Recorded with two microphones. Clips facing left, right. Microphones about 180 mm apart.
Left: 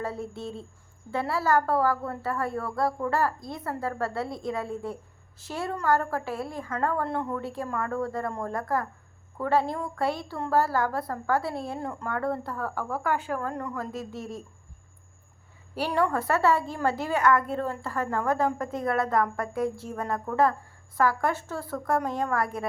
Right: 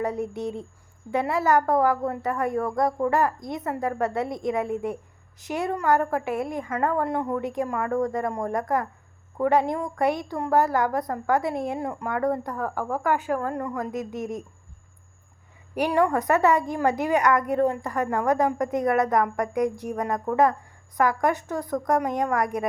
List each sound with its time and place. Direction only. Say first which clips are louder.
0.0 s a woman's voice: right 6 dB; 15° right (ahead or behind)
15.7 s a woman's voice: right 4 dB; 15° right (ahead or behind)